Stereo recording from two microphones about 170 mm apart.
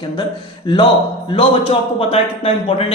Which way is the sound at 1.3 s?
30° left (ahead or behind).